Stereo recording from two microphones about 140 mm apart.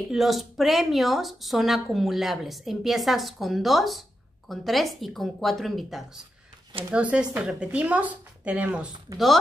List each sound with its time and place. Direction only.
0.1 s speech: centre (ahead or behind)